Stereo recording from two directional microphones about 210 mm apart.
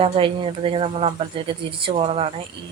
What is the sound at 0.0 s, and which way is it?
Speech, 25° right (ahead or behind).